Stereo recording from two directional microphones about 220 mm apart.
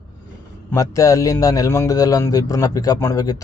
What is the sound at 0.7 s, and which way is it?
A man's voice, 15° left (ahead or behind).